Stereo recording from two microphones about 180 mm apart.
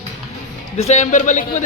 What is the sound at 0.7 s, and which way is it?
Speech, 35° left (ahead or behind).